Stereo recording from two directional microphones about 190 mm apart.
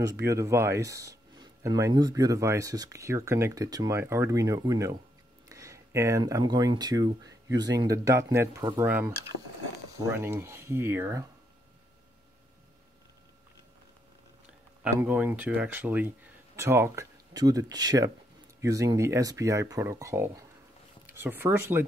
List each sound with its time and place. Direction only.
0.0 s speech: 15° right (ahead or behind)
14.8 s speech: 5° right (ahead or behind)